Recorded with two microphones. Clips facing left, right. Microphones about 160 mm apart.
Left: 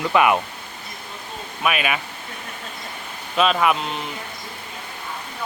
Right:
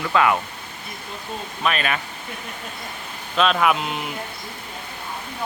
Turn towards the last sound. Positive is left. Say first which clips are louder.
# even
turn(degrees=-5)  # may be behind; listen again after turning